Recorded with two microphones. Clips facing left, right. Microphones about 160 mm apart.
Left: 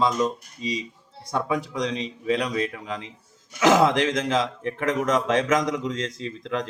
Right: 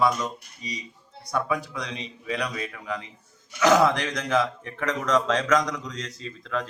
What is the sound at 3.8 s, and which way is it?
Speech, 20° left (ahead or behind).